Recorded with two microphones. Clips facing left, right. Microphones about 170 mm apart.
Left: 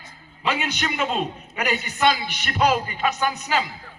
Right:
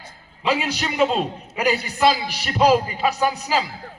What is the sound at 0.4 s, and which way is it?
A man's voice, 35° right (ahead or behind).